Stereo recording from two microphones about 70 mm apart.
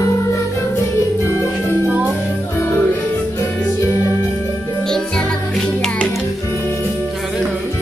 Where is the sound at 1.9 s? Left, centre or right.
Centre.